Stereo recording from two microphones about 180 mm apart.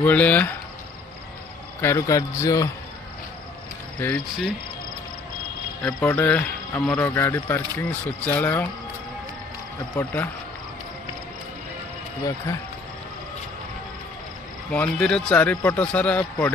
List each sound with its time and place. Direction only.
0.0 s speech: 10° left (ahead or behind)
1.8 s speech: 15° left (ahead or behind)
4.0 s speech: 5° left (ahead or behind)
5.8 s speech: 15° left (ahead or behind)
14.7 s speech: 5° left (ahead or behind)